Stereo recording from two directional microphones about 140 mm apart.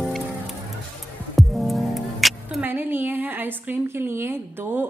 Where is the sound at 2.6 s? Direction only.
15° right (ahead or behind).